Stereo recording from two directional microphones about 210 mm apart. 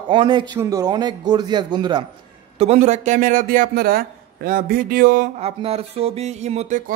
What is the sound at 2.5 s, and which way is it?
A man's voice, 30° right (ahead or behind).